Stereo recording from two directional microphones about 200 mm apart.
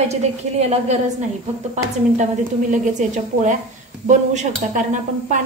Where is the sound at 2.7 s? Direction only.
35° right (ahead or behind).